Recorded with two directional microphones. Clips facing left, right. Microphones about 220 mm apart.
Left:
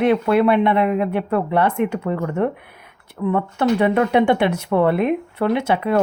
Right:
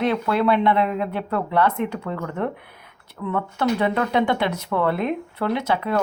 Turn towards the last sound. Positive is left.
turn(degrees=25)  # may be behind; listen again after turning